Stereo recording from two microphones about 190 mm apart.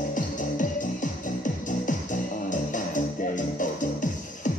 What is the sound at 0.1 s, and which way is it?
Music, 40° left (ahead or behind).